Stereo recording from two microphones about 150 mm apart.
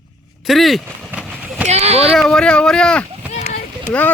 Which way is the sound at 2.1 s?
5° left (ahead or behind).